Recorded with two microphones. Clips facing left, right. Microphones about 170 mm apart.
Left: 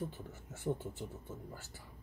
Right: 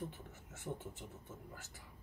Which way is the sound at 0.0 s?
35° left (ahead or behind).